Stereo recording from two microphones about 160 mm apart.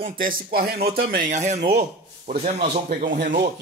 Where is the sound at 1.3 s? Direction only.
45° right (ahead or behind).